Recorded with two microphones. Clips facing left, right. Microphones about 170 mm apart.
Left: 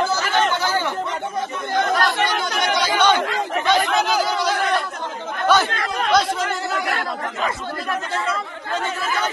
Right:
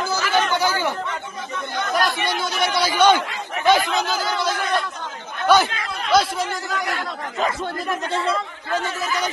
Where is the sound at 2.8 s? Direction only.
10° right (ahead or behind).